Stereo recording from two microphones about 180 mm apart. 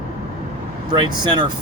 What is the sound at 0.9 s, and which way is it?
Speech, 25° right (ahead or behind).